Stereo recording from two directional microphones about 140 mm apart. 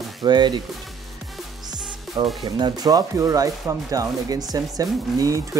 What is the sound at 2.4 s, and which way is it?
Speech, 30° right (ahead or behind).